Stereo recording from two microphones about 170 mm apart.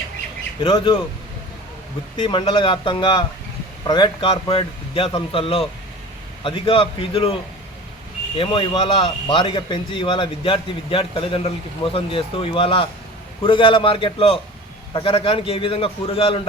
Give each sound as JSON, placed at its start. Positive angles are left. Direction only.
{"t": 0.6, "sound": "speech", "side_deg": 30}
{"t": 2.1, "sound": "speech", "side_deg": 30}
{"t": 8.4, "sound": "speech", "side_deg": 30}